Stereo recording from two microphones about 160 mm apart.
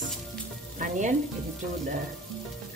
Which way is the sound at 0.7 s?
50° right (ahead or behind).